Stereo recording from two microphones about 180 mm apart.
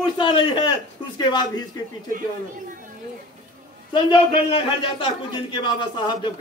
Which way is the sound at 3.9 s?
30° left (ahead or behind).